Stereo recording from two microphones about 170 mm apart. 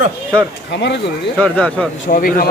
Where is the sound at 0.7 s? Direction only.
90° left.